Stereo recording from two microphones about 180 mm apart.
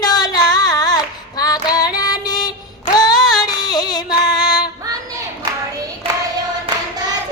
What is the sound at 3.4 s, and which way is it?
Music, 20° left (ahead or behind).